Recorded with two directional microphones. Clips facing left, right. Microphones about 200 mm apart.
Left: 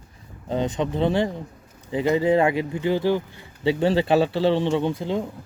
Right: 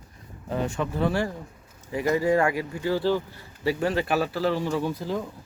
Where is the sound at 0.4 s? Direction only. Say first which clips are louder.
Left 4 dB; 25° left (ahead or behind).